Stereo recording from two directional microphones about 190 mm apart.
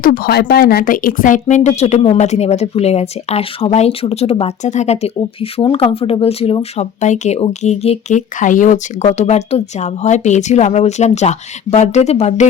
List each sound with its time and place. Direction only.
0.0 s speech: 50° left (ahead or behind); by 12.5 s 35° left (ahead or behind)